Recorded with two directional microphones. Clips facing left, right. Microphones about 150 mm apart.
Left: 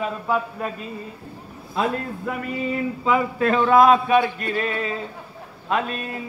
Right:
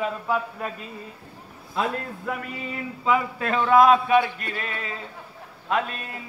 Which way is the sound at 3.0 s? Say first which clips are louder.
Left 2 dB; 35° left (ahead or behind).